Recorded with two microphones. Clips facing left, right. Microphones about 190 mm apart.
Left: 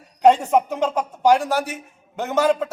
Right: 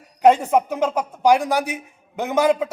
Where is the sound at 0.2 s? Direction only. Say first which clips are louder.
Even; 10° right (ahead or behind).